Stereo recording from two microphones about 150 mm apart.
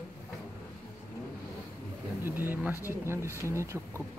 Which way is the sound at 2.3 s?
15° right (ahead or behind).